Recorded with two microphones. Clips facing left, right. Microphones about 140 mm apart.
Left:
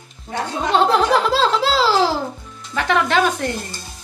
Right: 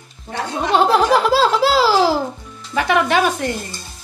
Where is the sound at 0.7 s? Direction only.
10° right (ahead or behind).